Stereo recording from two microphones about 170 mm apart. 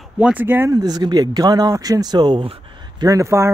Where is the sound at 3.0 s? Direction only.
20° right (ahead or behind).